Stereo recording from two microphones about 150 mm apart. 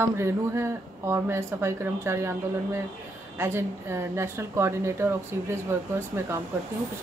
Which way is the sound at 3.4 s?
20° right (ahead or behind).